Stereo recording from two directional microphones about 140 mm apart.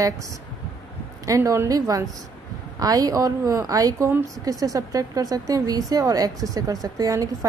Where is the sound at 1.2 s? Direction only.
25° right (ahead or behind).